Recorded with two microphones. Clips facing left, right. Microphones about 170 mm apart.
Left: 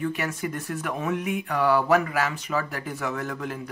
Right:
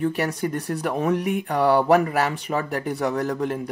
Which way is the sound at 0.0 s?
35° right (ahead or behind).